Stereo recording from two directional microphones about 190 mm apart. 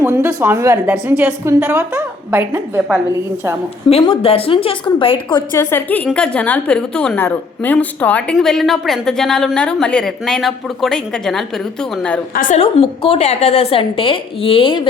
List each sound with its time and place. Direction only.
0.0 s a woman's voice: 15° right (ahead or behind)
3.8 s a woman's voice: 30° left (ahead or behind)
5.5 s a woman's voice: 10° left (ahead or behind)
12.3 s a woman's voice: 45° left (ahead or behind)
12.8 s a woman's voice: 30° left (ahead or behind)